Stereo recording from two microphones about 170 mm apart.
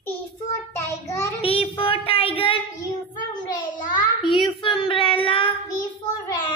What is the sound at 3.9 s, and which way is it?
Child singing, 30° left (ahead or behind).